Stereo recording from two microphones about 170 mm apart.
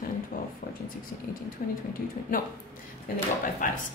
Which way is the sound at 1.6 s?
55° left (ahead or behind).